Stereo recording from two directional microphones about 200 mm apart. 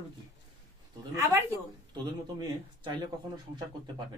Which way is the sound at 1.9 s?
20° right (ahead or behind).